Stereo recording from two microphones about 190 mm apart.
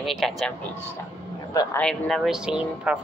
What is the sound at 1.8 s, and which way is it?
Speech, centre (ahead or behind).